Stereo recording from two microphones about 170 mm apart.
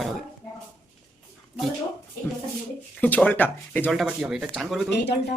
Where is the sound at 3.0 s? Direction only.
10° left (ahead or behind).